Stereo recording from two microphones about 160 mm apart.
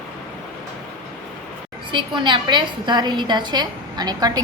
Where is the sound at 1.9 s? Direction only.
30° right (ahead or behind).